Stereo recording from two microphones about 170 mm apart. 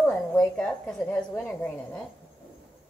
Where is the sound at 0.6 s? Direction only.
5° left (ahead or behind).